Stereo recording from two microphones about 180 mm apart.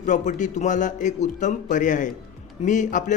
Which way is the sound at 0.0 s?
45° left (ahead or behind).